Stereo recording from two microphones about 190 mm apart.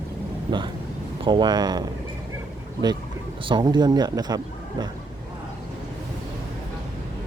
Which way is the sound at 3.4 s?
25° right (ahead or behind).